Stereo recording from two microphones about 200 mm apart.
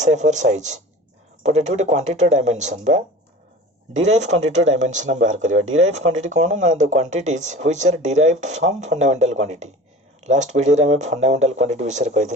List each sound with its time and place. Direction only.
0.0 s speech: 35° right (ahead or behind)
4.5 s speech: 35° right (ahead or behind)
5.5 s speech: 90° right
6.2 s speech: 35° right (ahead or behind)